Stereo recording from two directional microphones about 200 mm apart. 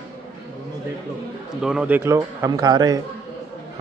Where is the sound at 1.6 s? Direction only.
5° right (ahead or behind).